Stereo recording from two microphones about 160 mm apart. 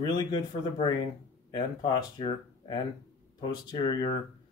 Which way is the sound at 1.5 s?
25° left (ahead or behind).